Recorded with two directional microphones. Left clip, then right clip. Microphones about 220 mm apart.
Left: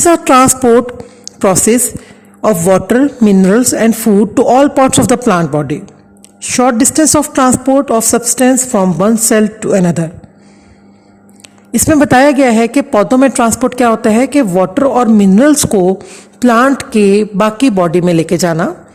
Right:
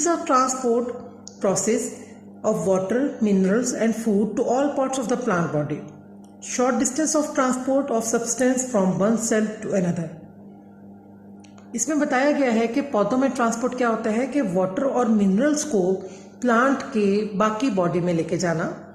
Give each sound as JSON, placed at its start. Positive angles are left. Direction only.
{"t": 0.0, "sound": "a woman's voice", "side_deg": 50}
{"t": 11.7, "sound": "a woman's voice", "side_deg": 45}